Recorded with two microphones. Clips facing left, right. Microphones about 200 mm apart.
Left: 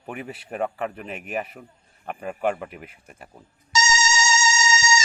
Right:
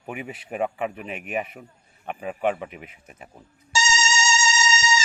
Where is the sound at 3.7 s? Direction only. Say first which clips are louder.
Left 2 dB; 30° right (ahead or behind).